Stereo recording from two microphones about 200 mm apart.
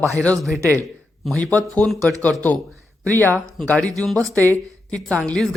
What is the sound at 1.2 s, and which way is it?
Speech, 5° left (ahead or behind).